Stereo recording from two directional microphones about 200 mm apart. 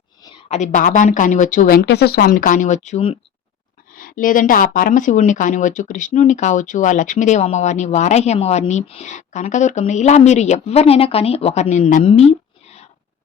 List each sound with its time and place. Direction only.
0.4 s speech: 35° left (ahead or behind)
3.9 s speech: 40° left (ahead or behind)